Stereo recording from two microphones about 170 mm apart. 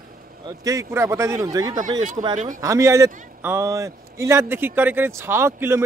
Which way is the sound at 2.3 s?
45° right (ahead or behind).